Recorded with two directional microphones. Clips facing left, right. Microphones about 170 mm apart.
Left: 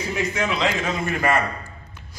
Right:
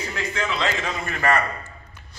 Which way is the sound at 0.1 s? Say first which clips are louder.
Left 4 dB; 10° left (ahead or behind).